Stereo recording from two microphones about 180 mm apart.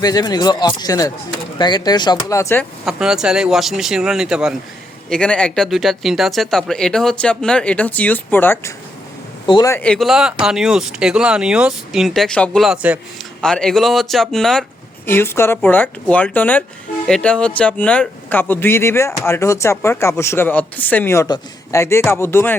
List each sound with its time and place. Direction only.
0.0 s speech: 20° left (ahead or behind)
2.8 s speech: centre (ahead or behind); by 9.8 s 20° left (ahead or behind)
9.8 s speech: 5° left (ahead or behind)
13.4 s speech: 5° left (ahead or behind)
15.0 s speech: 10° left (ahead or behind)